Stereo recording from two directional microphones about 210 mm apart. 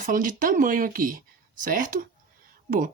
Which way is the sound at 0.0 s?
40° right (ahead or behind).